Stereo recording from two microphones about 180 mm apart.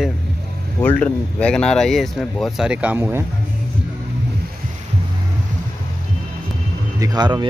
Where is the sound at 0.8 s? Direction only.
5° left (ahead or behind); by 3.2 s 10° right (ahead or behind).